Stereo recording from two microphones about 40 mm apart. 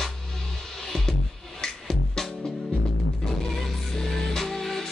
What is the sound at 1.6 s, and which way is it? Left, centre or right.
Music, centre.